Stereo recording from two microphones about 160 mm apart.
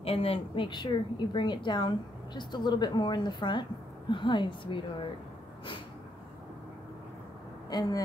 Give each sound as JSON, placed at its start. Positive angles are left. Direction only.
{"t": 0.0, "sound": "a woman's voice", "side_deg": 35}
{"t": 7.7, "sound": "a woman's voice", "side_deg": 25}